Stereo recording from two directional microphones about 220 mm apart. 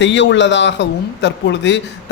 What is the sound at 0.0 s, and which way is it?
A man's voice, 55° left (ahead or behind).